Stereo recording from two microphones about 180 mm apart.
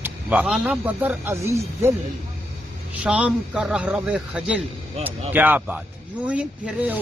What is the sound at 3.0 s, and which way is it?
A man's voice, 5° right (ahead or behind).